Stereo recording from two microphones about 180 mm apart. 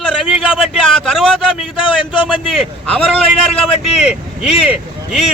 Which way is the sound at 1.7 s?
25° left (ahead or behind).